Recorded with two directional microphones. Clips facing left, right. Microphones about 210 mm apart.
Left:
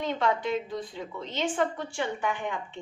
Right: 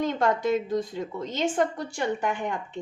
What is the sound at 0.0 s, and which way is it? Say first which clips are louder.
A woman's voice: right 3 dB; 45° right (ahead or behind).